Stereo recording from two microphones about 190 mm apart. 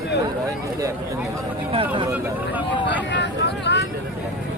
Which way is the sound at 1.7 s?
30° right (ahead or behind).